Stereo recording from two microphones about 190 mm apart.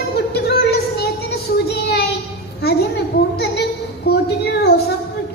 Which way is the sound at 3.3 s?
55° left (ahead or behind).